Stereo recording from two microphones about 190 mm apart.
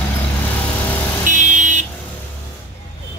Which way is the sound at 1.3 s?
40° right (ahead or behind).